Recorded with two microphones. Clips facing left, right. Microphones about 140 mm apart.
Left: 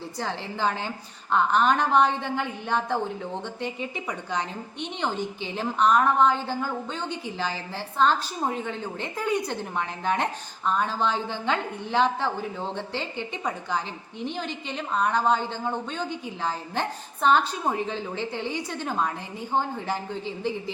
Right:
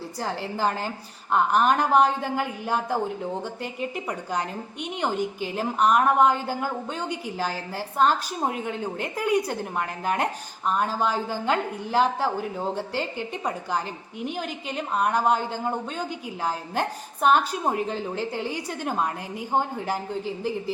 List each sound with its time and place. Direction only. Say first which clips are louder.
0.2 s a woman's voice: right 2 dB; 5° right (ahead or behind)
4.8 s a woman's voice: right 2 dB; 10° right (ahead or behind)